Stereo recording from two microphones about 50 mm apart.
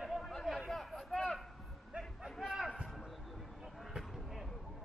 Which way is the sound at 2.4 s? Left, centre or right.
Centre.